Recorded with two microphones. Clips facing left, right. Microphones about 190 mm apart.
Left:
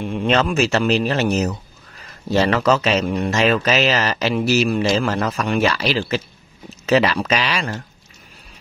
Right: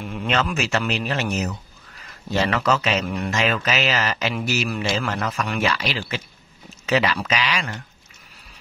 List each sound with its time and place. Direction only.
0.0 s speech: 25° left (ahead or behind)